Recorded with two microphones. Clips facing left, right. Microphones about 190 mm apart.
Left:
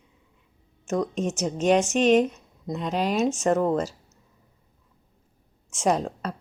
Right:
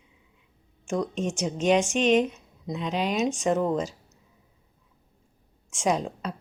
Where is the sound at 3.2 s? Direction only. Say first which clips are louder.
Left 2 dB; 5° left (ahead or behind).